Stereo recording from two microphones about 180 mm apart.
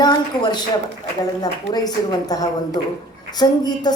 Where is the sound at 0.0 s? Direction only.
25° left (ahead or behind).